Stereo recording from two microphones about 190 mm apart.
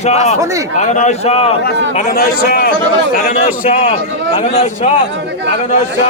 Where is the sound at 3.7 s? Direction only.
30° left (ahead or behind).